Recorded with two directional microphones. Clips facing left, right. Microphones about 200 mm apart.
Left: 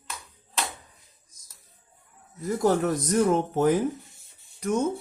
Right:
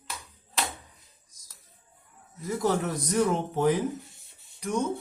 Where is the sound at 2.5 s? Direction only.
45° left (ahead or behind).